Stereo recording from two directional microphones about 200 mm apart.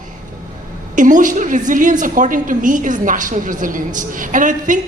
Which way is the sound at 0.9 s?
40° right (ahead or behind).